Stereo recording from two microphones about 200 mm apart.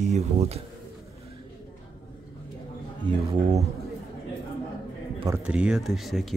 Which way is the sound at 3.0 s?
25° right (ahead or behind).